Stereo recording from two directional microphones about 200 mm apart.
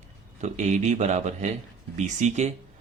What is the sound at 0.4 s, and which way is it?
Speech, 35° right (ahead or behind).